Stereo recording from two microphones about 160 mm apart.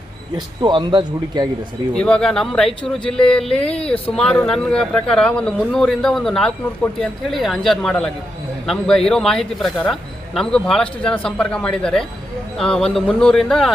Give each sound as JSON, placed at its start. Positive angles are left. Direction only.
{"t": 0.3, "sound": "speech", "side_deg": -30}
{"t": 2.0, "sound": "a man's voice", "side_deg": 5}